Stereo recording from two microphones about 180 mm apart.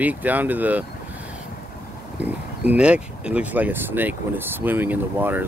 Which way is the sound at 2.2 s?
10° right (ahead or behind).